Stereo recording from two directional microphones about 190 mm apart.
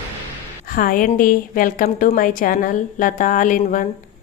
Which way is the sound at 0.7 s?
45° left (ahead or behind).